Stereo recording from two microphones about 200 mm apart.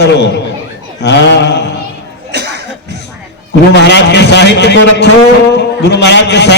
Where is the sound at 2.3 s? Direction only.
55° right (ahead or behind).